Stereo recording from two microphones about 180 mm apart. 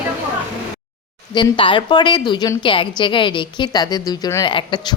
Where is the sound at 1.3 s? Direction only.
30° left (ahead or behind).